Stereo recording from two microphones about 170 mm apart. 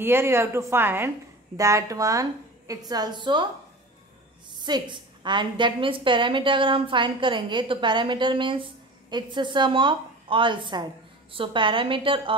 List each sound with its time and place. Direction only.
0.0 s a woman's voice: 15° right (ahead or behind)
4.5 s a woman's voice: 25° right (ahead or behind)